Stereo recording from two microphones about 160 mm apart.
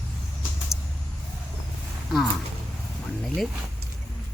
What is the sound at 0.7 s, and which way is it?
Vehicle, 5° right (ahead or behind).